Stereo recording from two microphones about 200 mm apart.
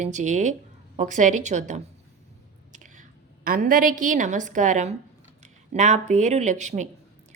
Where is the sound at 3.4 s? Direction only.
45° right (ahead or behind).